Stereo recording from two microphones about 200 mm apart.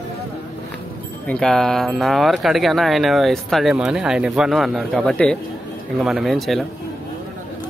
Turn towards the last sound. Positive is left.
turn(degrees=0)  # may be behind; listen again after turning